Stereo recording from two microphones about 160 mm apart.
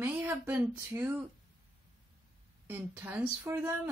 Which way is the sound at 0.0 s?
10° right (ahead or behind).